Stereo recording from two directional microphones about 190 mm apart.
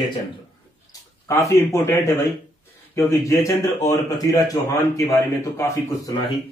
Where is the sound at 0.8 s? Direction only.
15° left (ahead or behind).